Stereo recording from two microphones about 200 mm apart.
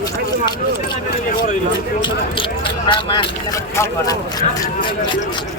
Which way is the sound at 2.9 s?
25° left (ahead or behind).